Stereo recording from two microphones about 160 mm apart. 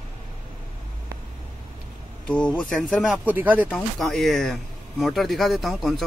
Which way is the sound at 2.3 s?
5° left (ahead or behind).